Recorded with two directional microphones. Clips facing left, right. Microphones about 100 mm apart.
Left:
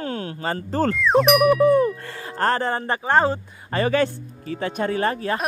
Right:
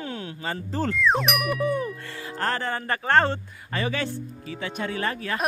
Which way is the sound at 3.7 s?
45° left (ahead or behind).